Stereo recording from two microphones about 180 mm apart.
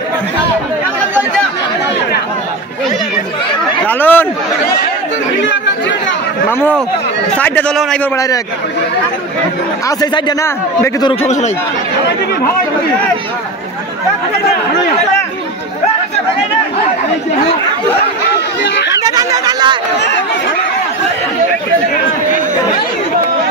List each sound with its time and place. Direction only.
3.8 s a sound: 10° left (ahead or behind)
7.3 s a man's voice: 10° left (ahead or behind)
9.8 s speech: 20° left (ahead or behind)
18.9 s chatter: 20° right (ahead or behind)